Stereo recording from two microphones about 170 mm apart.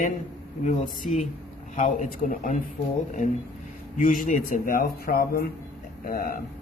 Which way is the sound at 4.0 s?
50° left (ahead or behind).